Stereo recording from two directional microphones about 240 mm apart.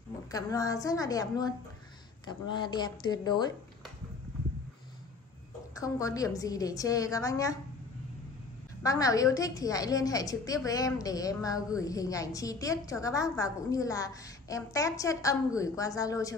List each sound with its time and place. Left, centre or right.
0.3 s a woman's voice: centre
5.8 s a woman's voice: centre
8.8 s a woman's voice: centre